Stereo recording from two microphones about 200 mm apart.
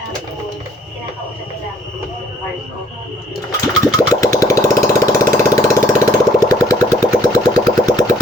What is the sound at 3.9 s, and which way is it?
Engine, 15° left (ahead or behind).